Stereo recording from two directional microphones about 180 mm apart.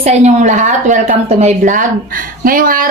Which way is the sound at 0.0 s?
40° right (ahead or behind).